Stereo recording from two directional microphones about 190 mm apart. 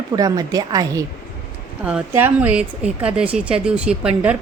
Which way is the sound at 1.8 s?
10° right (ahead or behind).